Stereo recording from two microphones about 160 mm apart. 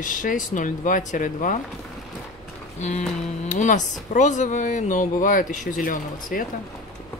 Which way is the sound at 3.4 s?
50° left (ahead or behind).